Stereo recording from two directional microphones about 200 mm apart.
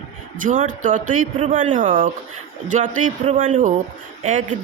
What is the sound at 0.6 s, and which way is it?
A woman's voice, 40° right (ahead or behind).